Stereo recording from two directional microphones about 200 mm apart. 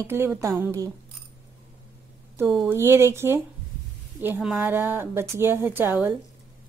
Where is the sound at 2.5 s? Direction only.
5° right (ahead or behind).